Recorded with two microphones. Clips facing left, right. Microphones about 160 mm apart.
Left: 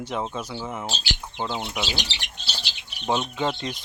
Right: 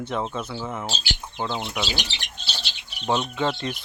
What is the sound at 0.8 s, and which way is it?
Speech, centre (ahead or behind).